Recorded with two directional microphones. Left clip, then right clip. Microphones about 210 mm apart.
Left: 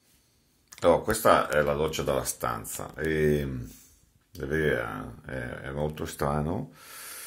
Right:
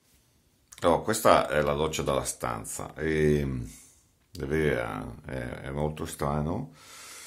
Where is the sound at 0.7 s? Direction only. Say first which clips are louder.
Left 2 dB; 10° right (ahead or behind).